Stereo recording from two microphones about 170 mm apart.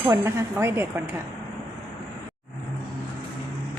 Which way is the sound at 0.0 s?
15° right (ahead or behind).